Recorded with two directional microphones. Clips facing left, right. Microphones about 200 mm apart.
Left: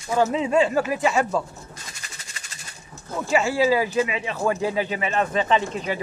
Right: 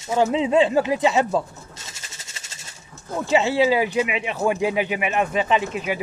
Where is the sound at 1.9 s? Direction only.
25° right (ahead or behind).